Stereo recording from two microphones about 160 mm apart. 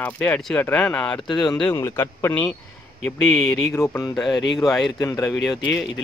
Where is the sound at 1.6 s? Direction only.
20° left (ahead or behind).